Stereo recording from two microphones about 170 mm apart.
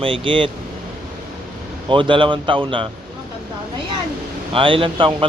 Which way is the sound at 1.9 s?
30° right (ahead or behind).